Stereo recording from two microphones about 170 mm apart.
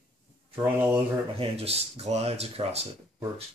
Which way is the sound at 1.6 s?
35° right (ahead or behind).